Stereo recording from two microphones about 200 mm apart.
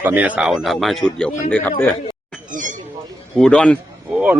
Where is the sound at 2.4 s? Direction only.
40° right (ahead or behind).